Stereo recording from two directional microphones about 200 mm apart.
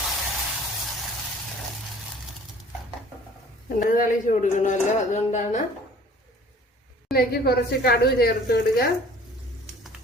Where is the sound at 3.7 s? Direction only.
45° left (ahead or behind).